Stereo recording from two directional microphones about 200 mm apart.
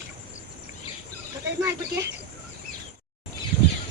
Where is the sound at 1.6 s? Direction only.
15° right (ahead or behind).